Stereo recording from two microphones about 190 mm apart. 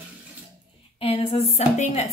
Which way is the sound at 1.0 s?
30° left (ahead or behind).